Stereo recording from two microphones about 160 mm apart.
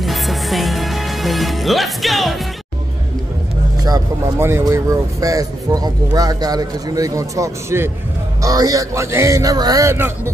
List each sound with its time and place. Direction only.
0.0 s music: centre (ahead or behind)
3.8 s speech: 20° right (ahead or behind)